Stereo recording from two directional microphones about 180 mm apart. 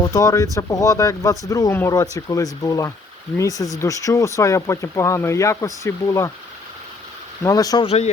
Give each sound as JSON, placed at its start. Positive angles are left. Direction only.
{"t": 0.0, "sound": "speech", "side_deg": 20}
{"t": 7.4, "sound": "speech", "side_deg": 20}
{"t": 7.9, "sound": "a man's voice", "side_deg": 35}